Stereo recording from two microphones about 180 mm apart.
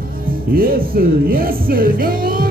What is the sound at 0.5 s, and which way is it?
Music, 55° right (ahead or behind).